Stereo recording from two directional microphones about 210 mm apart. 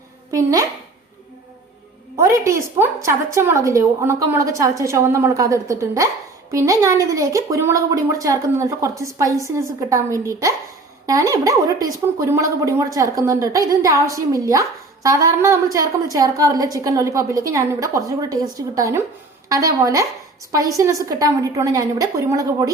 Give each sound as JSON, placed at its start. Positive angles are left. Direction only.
{"t": 0.3, "sound": "a child's voice", "side_deg": -15}
{"t": 2.1, "sound": "a woman's voice", "side_deg": -15}